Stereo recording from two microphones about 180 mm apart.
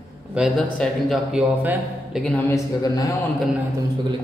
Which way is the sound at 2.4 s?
20° left (ahead or behind).